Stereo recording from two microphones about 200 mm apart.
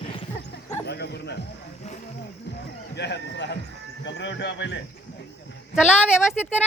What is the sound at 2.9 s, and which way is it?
A man's voice, 60° left (ahead or behind).